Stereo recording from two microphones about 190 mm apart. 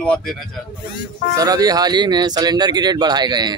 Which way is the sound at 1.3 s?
20° right (ahead or behind).